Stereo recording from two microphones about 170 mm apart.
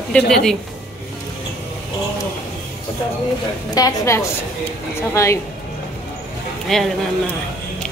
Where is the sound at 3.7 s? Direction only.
20° left (ahead or behind).